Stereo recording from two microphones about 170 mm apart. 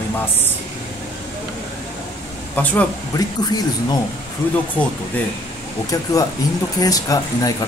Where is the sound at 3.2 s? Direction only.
25° left (ahead or behind).